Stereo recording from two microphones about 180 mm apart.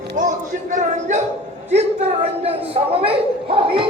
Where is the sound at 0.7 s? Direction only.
40° right (ahead or behind).